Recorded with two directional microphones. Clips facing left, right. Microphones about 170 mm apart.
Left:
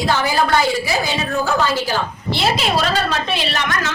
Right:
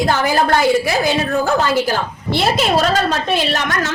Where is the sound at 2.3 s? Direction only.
50° right (ahead or behind).